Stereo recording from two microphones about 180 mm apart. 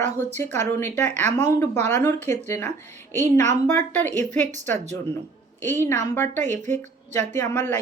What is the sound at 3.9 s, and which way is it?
Speech, 10° left (ahead or behind).